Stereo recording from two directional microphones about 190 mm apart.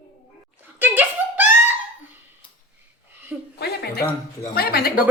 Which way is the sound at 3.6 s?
60° left (ahead or behind).